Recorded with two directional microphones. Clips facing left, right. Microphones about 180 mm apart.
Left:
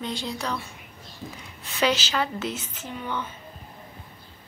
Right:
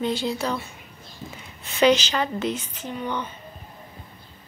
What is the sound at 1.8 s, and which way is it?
A woman's voice, 5° left (ahead or behind).